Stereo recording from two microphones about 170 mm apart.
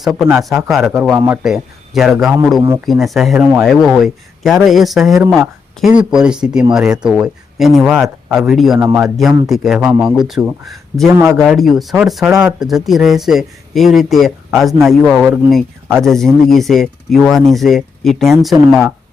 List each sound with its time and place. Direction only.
0.0 s speech: centre (ahead or behind)
1.0 s speech: 10° right (ahead or behind)
1.5 s speech: centre (ahead or behind)
8.8 s speech: 15° right (ahead or behind)
9.0 s speech: centre (ahead or behind)